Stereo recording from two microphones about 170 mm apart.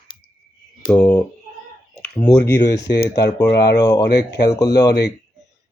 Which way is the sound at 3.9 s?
75° left (ahead or behind).